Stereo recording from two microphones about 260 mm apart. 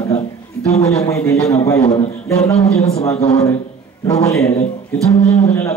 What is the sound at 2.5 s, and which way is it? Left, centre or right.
Speech, left.